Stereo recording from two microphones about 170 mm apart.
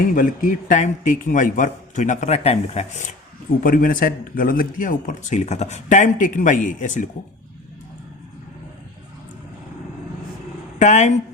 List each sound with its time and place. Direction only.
0.1 s speech: 50° left (ahead or behind)
3.6 s speech: 55° left (ahead or behind)
10.8 s speech: 45° left (ahead or behind)